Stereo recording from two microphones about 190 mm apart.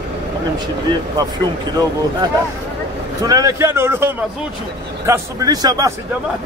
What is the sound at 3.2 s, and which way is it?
A man's voice, 20° right (ahead or behind).